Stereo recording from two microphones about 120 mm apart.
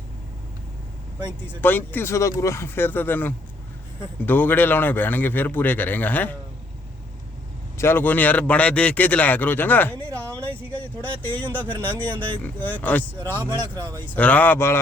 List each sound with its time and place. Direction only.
1.6 s a man's voice: 15° left (ahead or behind)
7.8 s a man's voice: 20° left (ahead or behind)
10.2 s a sound: 15° left (ahead or behind)
11.0 s a man's voice: 15° left (ahead or behind)